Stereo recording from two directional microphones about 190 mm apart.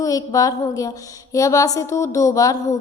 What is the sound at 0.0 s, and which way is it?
A woman's voice, 20° left (ahead or behind).